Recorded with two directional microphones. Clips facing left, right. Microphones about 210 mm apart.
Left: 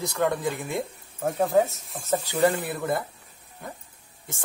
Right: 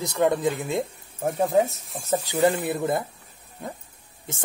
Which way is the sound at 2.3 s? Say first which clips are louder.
Right 2 dB; 20° right (ahead or behind).